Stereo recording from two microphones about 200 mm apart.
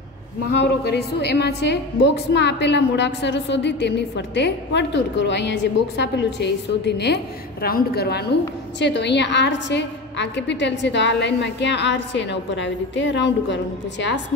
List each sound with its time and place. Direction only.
0.6 s a woman's voice: 55° left (ahead or behind)